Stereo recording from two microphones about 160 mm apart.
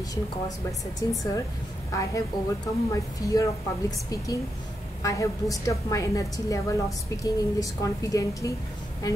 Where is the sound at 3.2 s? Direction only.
25° left (ahead or behind).